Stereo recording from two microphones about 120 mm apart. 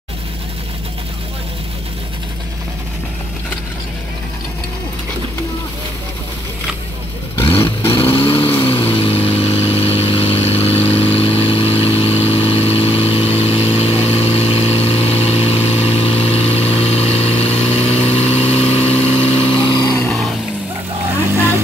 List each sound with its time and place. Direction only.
7.9 s vehicle: 50° left (ahead or behind)
19.7 s vehicle: 35° left (ahead or behind)